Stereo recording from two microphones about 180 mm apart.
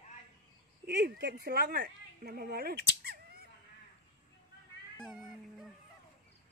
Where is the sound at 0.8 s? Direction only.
65° right (ahead or behind).